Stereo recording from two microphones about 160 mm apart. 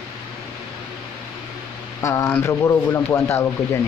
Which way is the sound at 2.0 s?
20° left (ahead or behind).